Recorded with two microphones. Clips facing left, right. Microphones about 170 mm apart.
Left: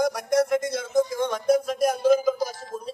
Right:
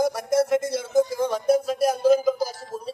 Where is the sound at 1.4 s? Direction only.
5° right (ahead or behind).